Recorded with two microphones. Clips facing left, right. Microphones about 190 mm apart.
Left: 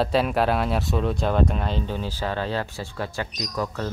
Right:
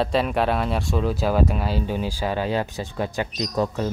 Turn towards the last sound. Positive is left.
turn(degrees=-25)  # may be behind; listen again after turning